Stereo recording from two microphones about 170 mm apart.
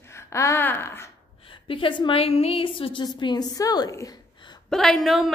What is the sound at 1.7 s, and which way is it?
A woman's voice, 30° left (ahead or behind).